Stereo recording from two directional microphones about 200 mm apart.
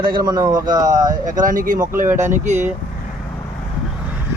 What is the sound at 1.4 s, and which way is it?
Speech, 40° right (ahead or behind).